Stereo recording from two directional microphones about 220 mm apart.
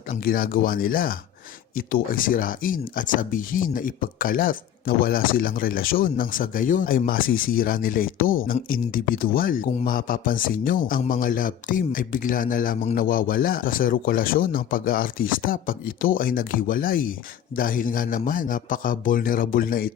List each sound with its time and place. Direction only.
0.1 s speech: 40° left (ahead or behind)